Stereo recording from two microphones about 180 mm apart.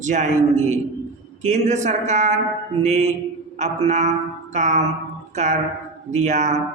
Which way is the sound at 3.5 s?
40° right (ahead or behind).